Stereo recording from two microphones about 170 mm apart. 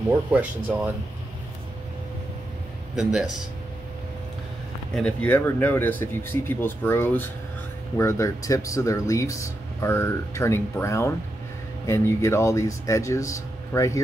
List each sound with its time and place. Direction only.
0.3 s speech: 10° right (ahead or behind)
3.0 s speech: 5° right (ahead or behind)
4.9 s speech: 5° left (ahead or behind)